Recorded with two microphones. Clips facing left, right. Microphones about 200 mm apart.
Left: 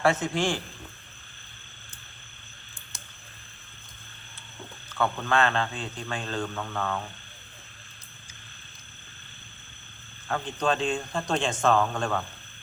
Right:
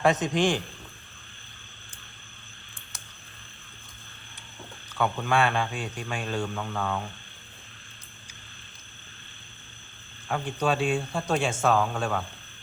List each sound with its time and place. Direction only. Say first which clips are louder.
0.0 s a man's voice: right 2 dB; 20° right (ahead or behind)
4.9 s a man's voice: even; 10° right (ahead or behind)
10.2 s a man's voice: even; 10° right (ahead or behind)